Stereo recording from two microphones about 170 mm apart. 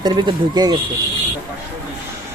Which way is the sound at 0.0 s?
25° right (ahead or behind).